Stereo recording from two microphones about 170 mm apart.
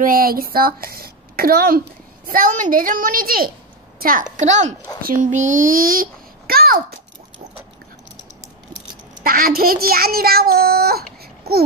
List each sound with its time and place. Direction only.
0.0 s a child's voice: 60° right (ahead or behind)
9.2 s a child's voice: 60° right (ahead or behind)
11.5 s babbling: 70° right (ahead or behind)